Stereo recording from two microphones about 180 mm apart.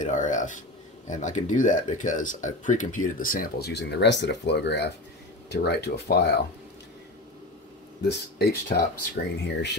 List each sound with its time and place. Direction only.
0.0 s speech: 45° left (ahead or behind); by 6.3 s 65° left (ahead or behind)
8.0 s speech: 60° left (ahead or behind)
9.4 s speech: 70° left (ahead or behind)